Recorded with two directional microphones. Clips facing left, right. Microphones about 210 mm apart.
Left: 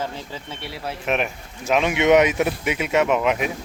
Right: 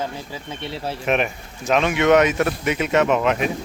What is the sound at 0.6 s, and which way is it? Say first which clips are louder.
Speech: right 4 dB; 25° right (ahead or behind).